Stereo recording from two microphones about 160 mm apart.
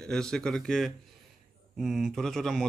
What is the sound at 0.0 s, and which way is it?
Speech, 5° left (ahead or behind).